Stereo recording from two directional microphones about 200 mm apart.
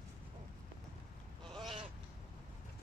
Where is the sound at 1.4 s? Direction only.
Centre (ahead or behind).